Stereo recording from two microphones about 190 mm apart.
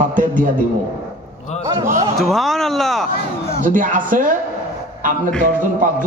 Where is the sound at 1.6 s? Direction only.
15° right (ahead or behind).